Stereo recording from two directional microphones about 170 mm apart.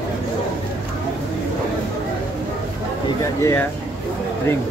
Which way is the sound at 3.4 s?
15° left (ahead or behind).